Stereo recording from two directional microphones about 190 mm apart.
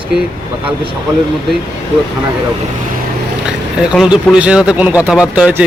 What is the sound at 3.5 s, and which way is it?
Speech, 5° right (ahead or behind).